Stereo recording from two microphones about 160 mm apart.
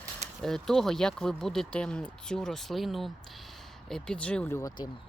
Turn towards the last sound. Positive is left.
turn(degrees=25)  # may be behind; listen again after turning